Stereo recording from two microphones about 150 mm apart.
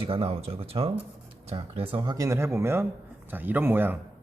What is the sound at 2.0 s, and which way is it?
A man's voice, 25° right (ahead or behind).